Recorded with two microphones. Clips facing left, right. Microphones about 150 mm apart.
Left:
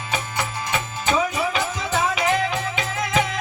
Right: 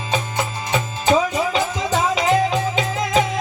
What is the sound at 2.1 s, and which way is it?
Music, 30° right (ahead or behind).